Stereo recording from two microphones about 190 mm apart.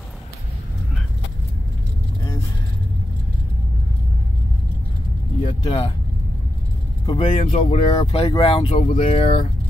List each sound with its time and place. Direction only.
5.4 s vehicle: 35° left (ahead or behind)
7.1 s speech: 25° left (ahead or behind)
7.3 s speech: 35° left (ahead or behind)